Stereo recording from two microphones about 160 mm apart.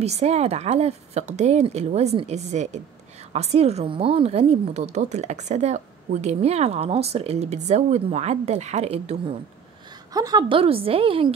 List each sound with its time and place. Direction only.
0.0 s a woman's voice: 45° right (ahead or behind)
10.1 s a woman's voice: 25° right (ahead or behind)